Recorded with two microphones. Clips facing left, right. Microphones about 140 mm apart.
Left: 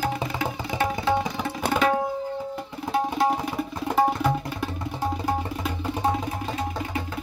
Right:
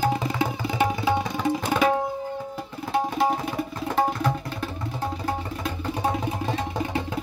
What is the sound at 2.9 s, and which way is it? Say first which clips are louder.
Music: even; centre (ahead or behind).